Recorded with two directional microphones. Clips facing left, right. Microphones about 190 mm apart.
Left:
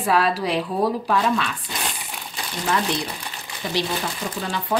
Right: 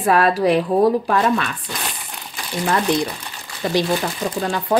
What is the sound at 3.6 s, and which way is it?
Speech, 55° right (ahead or behind).